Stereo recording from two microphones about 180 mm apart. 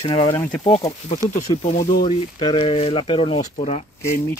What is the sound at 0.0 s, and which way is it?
Speech, 30° left (ahead or behind).